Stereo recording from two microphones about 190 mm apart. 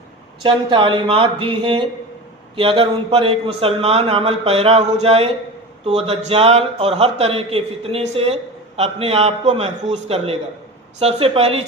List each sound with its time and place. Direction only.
0.4 s speech: 25° right (ahead or behind)